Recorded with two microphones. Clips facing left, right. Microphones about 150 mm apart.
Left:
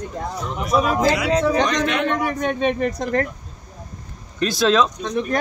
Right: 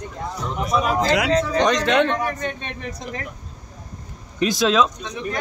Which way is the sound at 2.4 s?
65° left (ahead or behind).